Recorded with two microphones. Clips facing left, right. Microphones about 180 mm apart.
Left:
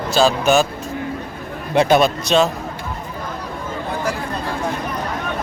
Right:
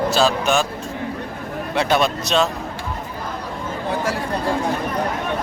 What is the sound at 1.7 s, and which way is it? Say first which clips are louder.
Speech: left 5 dB; 20° left (ahead or behind).